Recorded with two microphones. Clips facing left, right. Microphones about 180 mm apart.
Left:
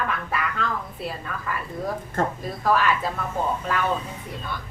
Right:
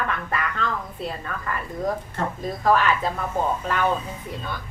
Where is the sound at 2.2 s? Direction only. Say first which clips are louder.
Left 7 dB; 45° left (ahead or behind).